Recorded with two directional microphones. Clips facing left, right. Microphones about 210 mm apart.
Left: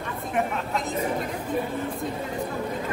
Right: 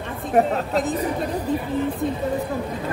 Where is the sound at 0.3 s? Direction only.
40° right (ahead or behind).